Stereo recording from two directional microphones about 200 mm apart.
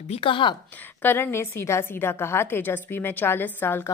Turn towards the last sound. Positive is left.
turn(degrees=10)  # may be behind; listen again after turning